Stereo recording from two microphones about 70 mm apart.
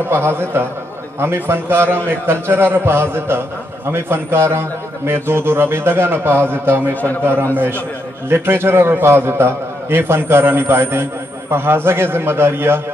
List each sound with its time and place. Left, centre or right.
0.1 s a man's voice: right
6.9 s a man's voice: left
8.3 s a man's voice: right